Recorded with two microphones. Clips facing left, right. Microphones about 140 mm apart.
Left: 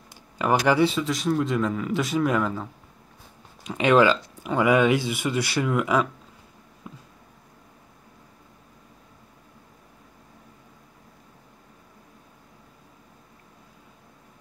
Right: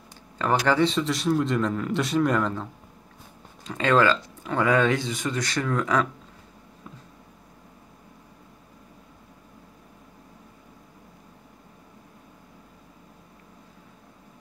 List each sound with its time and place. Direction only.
0.4 s speech: 10° left (ahead or behind)
3.6 s speech: 15° left (ahead or behind)
6.8 s a sound: 15° left (ahead or behind)